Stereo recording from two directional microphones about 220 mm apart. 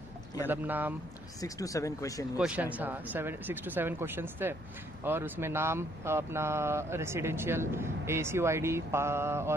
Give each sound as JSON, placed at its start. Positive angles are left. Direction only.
{"t": 0.5, "sound": "speech", "side_deg": -10}
{"t": 1.4, "sound": "speech", "side_deg": 15}
{"t": 2.3, "sound": "speech", "side_deg": -5}